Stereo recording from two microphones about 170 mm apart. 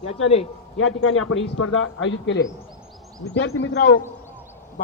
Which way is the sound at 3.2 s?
90° left.